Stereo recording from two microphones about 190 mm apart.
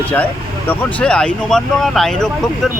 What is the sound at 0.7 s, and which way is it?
Speech, 5° left (ahead or behind).